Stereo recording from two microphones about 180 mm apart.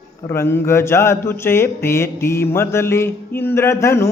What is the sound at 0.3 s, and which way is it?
Speech, 15° left (ahead or behind).